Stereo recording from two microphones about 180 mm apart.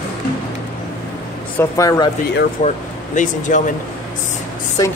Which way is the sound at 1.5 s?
20° left (ahead or behind).